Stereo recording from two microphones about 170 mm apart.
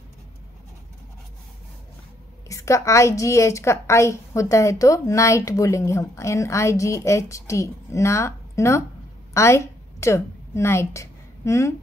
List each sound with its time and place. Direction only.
2.4 s a woman's voice: 20° left (ahead or behind)